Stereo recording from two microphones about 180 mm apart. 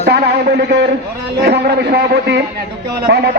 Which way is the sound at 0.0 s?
60° right (ahead or behind).